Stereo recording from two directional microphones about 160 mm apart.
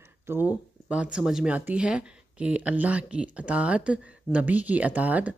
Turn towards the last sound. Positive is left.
turn(degrees=-10)  # may be behind; listen again after turning